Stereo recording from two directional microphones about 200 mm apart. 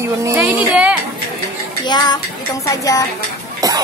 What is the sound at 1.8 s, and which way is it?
Speech, 20° left (ahead or behind).